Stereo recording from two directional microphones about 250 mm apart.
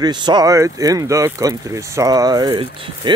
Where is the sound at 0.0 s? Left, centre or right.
Centre.